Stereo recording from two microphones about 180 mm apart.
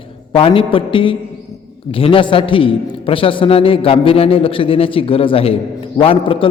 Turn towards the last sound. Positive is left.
turn(degrees=30)  # may be behind; listen again after turning